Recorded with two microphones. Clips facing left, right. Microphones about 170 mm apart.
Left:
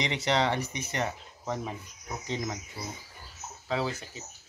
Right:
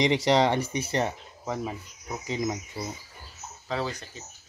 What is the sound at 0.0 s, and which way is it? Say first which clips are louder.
Speech: right 6 dB; 35° right (ahead or behind).